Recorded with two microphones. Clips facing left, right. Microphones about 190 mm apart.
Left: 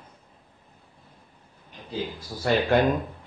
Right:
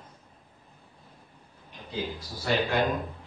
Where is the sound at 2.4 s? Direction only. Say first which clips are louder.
Left 5 dB; 55° left (ahead or behind).